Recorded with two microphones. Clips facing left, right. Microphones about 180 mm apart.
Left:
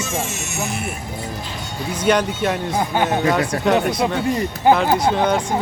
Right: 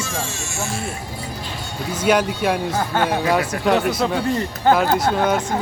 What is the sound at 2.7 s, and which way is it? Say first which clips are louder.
Speech: left 1 dB; 20° left (ahead or behind).